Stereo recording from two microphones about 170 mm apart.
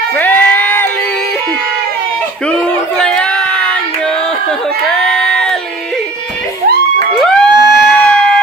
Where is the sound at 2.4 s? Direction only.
5° left (ahead or behind).